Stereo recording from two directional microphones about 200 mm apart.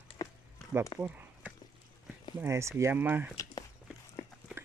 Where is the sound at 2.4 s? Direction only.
15° right (ahead or behind).